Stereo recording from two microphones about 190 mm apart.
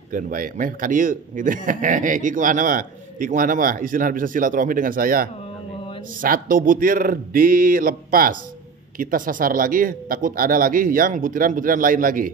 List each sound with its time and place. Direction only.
0.1 s a man's voice: 45° right (ahead or behind)